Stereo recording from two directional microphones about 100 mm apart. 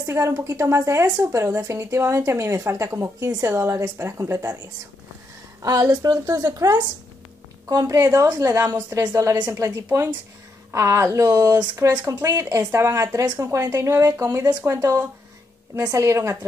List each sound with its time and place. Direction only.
0.0 s a woman's voice: 25° right (ahead or behind)
5.6 s a woman's voice: 40° right (ahead or behind)